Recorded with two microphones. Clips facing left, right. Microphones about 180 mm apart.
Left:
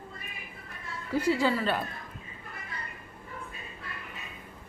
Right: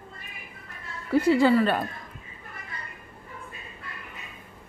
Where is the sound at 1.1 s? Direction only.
60° right (ahead or behind).